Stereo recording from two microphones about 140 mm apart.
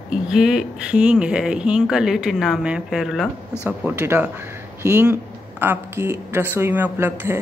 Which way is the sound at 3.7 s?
15° right (ahead or behind).